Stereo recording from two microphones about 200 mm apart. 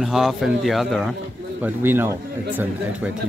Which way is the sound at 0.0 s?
Centre (ahead or behind).